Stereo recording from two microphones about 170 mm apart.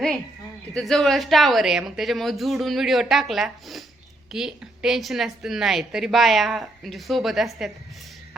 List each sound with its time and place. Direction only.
0.7 s a woman's voice: centre (ahead or behind)